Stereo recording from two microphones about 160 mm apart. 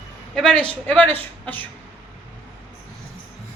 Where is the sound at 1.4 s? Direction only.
10° left (ahead or behind).